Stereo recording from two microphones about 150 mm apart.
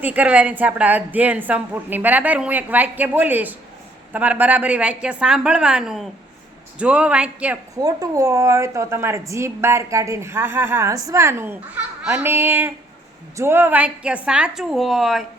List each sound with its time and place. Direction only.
0.0 s a woman's voice: 10° right (ahead or behind)
7.8 s a woman's voice: 25° right (ahead or behind); by 15.2 s centre (ahead or behind)